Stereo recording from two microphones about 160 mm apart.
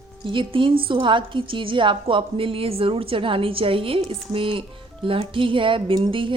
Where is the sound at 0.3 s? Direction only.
30° right (ahead or behind).